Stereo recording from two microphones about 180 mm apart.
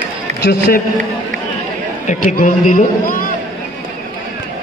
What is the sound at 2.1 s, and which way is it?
A man's voice, 45° left (ahead or behind).